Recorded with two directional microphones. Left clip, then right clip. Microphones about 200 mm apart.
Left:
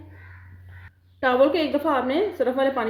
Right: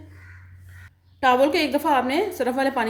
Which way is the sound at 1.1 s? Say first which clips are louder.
Right 1 dB; 25° right (ahead or behind).